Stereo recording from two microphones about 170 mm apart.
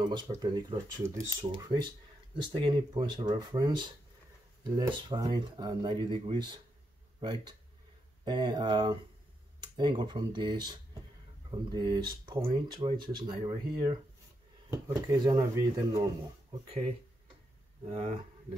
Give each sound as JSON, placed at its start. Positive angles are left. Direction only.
{"t": 0.3, "sound": "speech", "side_deg": -25}
{"t": 5.0, "sound": "speech", "side_deg": -25}
{"t": 17.8, "sound": "speech", "side_deg": -35}